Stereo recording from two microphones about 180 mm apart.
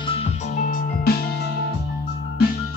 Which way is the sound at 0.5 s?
50° left (ahead or behind).